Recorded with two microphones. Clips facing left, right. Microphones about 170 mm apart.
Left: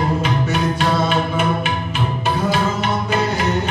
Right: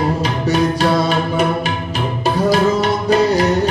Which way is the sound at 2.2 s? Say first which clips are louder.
Right 6 dB; 40° right (ahead or behind).